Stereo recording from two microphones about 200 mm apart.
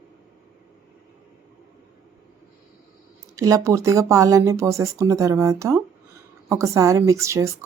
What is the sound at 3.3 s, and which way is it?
Speech, 15° right (ahead or behind).